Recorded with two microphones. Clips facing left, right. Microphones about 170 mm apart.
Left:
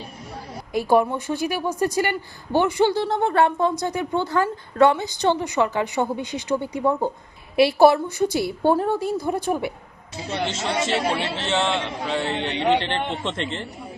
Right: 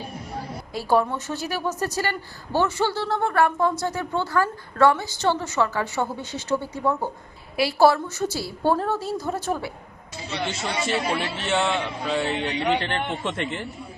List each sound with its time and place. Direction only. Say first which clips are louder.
0.7 s a woman's voice: left 3 dB; 15° left (ahead or behind)
11.2 s a man's voice: left 2 dB; 85° left
12.1 s a man's voice: even; 10° right (ahead or behind)
12.5 s a man's voice: left 5 dB; 30° left (ahead or behind)
13.2 s a man's voice: even; 10° right (ahead or behind)